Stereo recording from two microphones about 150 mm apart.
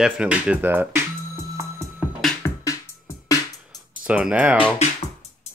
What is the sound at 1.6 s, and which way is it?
Music, 20° right (ahead or behind).